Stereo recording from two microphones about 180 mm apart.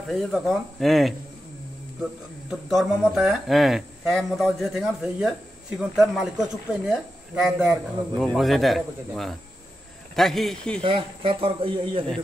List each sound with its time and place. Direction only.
0.1 s speech: centre (ahead or behind)
2.7 s speech: centre (ahead or behind)
10.8 s speech: 30° right (ahead or behind)